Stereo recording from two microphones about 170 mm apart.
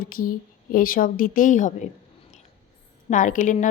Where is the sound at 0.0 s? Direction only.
55° left (ahead or behind).